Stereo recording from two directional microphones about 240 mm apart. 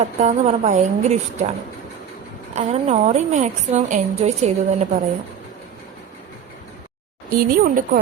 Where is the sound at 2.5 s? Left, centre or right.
Right.